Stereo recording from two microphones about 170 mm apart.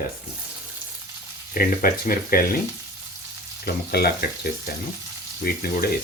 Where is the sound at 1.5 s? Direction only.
55° left (ahead or behind).